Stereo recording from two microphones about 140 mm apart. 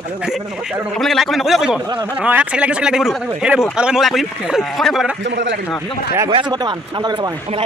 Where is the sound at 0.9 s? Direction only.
Centre (ahead or behind).